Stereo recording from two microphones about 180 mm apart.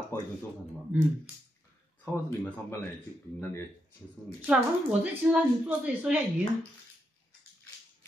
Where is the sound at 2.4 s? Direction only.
10° left (ahead or behind).